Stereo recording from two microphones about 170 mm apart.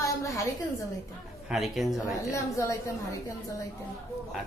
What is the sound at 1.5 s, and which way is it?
Speech, centre (ahead or behind).